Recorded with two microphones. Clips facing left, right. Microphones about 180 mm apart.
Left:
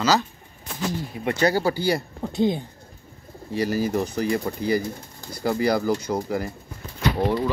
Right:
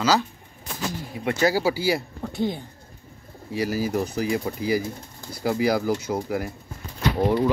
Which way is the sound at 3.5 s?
Centre (ahead or behind).